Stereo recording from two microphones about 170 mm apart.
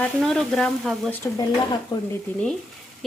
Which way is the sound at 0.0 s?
5° left (ahead or behind).